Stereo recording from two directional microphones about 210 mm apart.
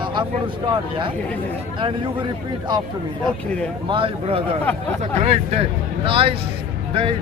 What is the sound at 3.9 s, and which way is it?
Speech, 25° right (ahead or behind).